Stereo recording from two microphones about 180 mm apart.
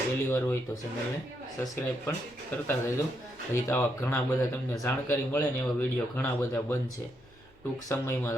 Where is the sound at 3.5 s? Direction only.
15° left (ahead or behind).